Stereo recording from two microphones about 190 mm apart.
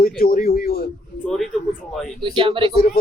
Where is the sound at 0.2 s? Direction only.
50° left (ahead or behind).